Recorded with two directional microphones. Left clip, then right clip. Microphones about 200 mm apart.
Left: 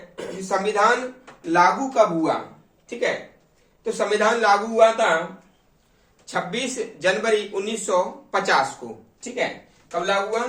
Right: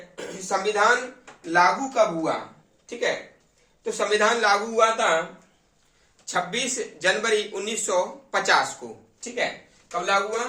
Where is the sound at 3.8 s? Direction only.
20° right (ahead or behind).